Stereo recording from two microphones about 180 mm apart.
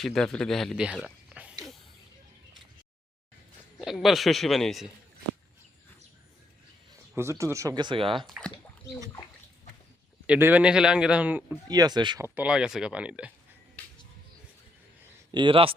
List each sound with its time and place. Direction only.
0.0 s speech: 5° left (ahead or behind)
3.8 s a man's voice: centre (ahead or behind)
7.2 s speech: 15° right (ahead or behind)
8.3 s speech: 5° left (ahead or behind)
10.2 s a man's voice: 10° right (ahead or behind)
11.7 s speech: 20° right (ahead or behind)
12.3 s a man's voice: 5° right (ahead or behind)
15.3 s speech: 25° right (ahead or behind)